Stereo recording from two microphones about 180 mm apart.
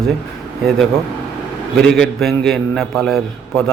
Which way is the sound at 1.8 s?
5° left (ahead or behind).